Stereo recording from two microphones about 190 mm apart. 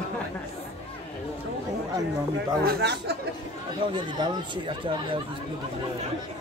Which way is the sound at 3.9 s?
25° right (ahead or behind).